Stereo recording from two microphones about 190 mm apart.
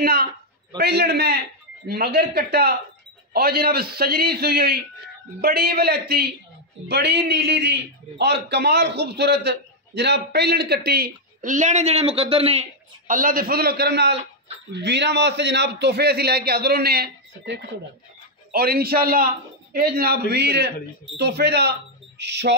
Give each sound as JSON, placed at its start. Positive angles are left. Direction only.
{"t": 0.0, "sound": "a man's voice", "side_deg": -55}